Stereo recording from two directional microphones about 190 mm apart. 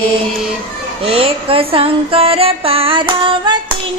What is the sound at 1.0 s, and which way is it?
Music, 30° right (ahead or behind).